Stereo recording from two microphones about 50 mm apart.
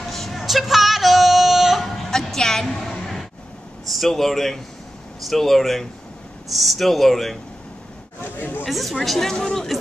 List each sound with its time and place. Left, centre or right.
0.0 s a sound: centre
3.9 s speech: centre
8.2 s chatter: left
8.6 s speech: centre